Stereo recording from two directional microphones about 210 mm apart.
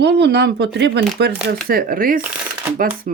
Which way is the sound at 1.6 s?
45° right (ahead or behind).